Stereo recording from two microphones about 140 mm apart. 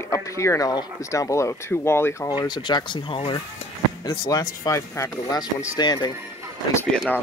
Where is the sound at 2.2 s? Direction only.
30° left (ahead or behind).